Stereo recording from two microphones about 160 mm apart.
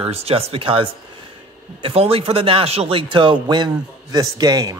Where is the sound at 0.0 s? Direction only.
40° right (ahead or behind).